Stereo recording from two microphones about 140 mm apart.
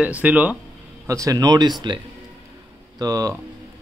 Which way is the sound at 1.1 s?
25° right (ahead or behind).